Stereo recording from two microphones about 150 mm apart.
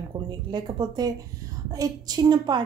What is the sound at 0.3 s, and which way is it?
A woman's voice, 30° right (ahead or behind).